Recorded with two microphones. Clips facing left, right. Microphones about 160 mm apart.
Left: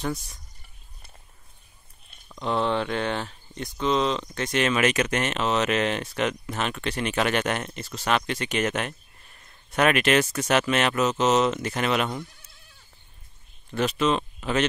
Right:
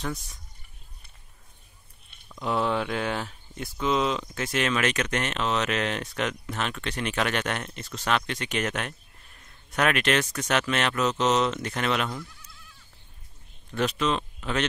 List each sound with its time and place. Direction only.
0.0 s speech: centre (ahead or behind)
2.3 s speech: 5° right (ahead or behind)
13.7 s speech: centre (ahead or behind)